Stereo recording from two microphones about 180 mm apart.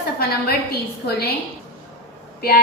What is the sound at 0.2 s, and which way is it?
Speech, 60° left (ahead or behind).